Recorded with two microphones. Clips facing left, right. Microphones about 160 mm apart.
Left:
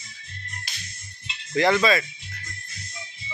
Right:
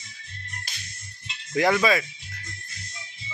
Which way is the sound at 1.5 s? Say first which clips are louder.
Left 1 dB; 10° right (ahead or behind).